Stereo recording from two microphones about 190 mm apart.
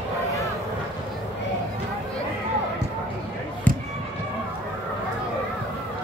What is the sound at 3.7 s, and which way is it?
Basketball bounce, 10° left (ahead or behind).